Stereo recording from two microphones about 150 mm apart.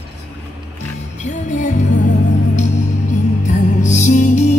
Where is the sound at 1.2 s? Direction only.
55° left (ahead or behind).